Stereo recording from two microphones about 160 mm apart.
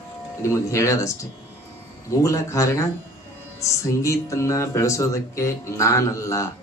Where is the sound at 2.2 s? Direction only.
20° left (ahead or behind).